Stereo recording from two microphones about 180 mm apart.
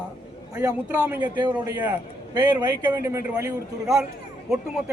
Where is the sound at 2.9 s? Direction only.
15° right (ahead or behind).